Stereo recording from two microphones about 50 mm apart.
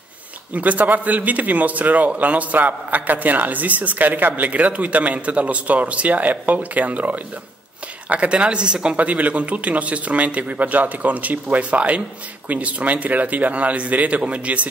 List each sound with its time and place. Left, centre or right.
0.5 s speech: right
8.9 s speech: right